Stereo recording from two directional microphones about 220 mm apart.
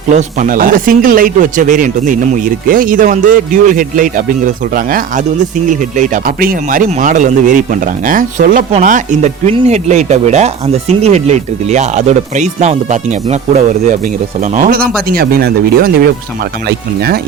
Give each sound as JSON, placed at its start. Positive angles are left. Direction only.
{"t": 0.1, "sound": "speech", "side_deg": -35}